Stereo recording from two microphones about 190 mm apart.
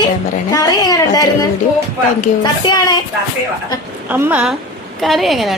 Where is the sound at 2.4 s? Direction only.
20° left (ahead or behind).